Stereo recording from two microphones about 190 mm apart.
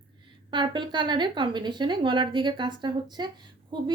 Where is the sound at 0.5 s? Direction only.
25° right (ahead or behind).